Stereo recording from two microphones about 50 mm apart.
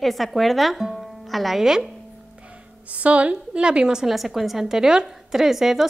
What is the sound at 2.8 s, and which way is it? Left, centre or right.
A woman's voice, right.